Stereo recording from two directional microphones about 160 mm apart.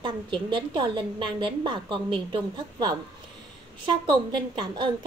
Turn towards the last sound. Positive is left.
turn(degrees=-30)  # may be behind; listen again after turning